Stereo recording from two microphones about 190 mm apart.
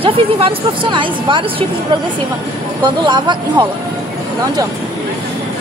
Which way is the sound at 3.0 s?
25° right (ahead or behind).